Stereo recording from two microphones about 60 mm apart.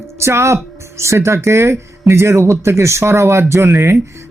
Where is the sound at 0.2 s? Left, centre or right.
Right.